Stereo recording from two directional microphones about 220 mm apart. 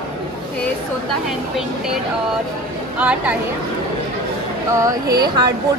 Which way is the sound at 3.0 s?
5° right (ahead or behind).